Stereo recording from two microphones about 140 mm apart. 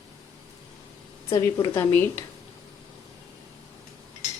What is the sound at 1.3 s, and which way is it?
Speech, 30° left (ahead or behind).